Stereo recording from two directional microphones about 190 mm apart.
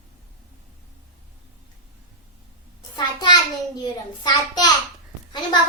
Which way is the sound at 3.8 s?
20° left (ahead or behind).